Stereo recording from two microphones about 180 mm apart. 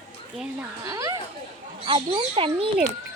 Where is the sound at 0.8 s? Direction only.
20° right (ahead or behind).